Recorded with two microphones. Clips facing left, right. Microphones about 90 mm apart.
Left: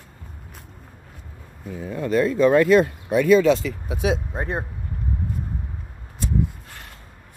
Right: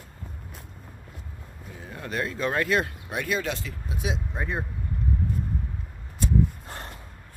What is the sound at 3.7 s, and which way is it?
Speech, 90° left.